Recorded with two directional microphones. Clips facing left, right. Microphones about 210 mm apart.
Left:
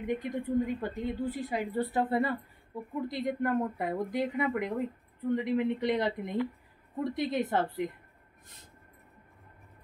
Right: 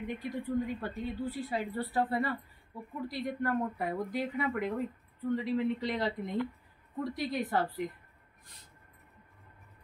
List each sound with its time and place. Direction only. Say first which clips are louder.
0.0 s a woman's voice: left 4 dB; 20° left (ahead or behind)